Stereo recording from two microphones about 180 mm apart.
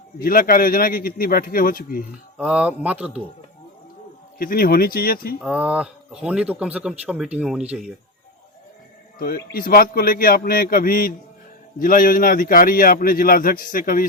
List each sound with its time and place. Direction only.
0.2 s a man's voice: 55° left (ahead or behind)
2.4 s speech: 5° right (ahead or behind)
4.4 s a man's voice: 55° left (ahead or behind)
5.4 s speech: 5° right (ahead or behind)
9.1 s a man's voice: 55° left (ahead or behind)